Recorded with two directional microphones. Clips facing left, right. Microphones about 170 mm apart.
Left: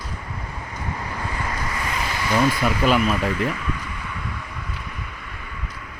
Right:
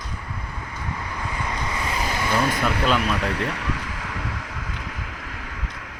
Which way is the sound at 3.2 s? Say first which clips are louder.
Left 2 dB; 75° right (ahead or behind).